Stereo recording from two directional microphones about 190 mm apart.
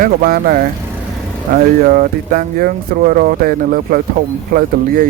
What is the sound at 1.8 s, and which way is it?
Speech, 50° right (ahead or behind).